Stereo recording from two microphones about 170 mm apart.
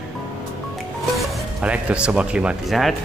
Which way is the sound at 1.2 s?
5° right (ahead or behind).